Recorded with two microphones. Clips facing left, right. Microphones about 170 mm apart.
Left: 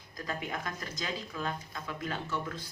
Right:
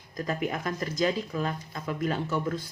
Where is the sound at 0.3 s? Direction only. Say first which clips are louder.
Right 7 dB; 40° right (ahead or behind).